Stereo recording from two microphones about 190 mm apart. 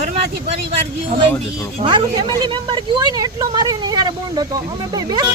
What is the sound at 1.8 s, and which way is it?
A woman's voice, 25° right (ahead or behind).